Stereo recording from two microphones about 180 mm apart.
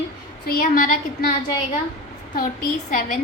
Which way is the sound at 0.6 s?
50° left (ahead or behind).